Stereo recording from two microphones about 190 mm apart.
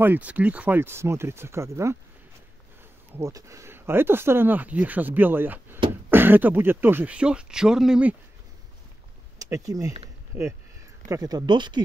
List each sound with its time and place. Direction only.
0.0 s speech: 10° right (ahead or behind)
3.2 s speech: 15° right (ahead or behind)
9.4 s speech: 15° right (ahead or behind)
11.1 s speech: 20° right (ahead or behind)